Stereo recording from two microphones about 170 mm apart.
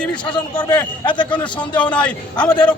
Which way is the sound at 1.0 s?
25° left (ahead or behind).